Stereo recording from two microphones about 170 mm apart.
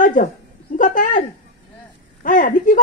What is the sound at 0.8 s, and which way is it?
Speech, 50° left (ahead or behind).